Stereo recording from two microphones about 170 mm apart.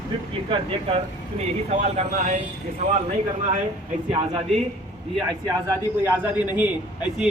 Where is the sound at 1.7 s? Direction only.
40° right (ahead or behind).